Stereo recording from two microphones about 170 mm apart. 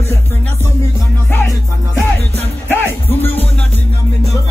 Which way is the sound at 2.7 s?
10° left (ahead or behind).